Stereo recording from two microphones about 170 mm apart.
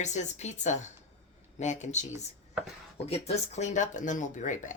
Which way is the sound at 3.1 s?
40° left (ahead or behind).